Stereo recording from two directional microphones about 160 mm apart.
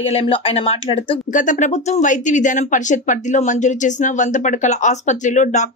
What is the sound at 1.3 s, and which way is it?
A woman's voice, 50° left (ahead or behind).